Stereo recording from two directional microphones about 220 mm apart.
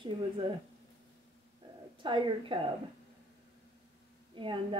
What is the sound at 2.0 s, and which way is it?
Speech, 20° right (ahead or behind).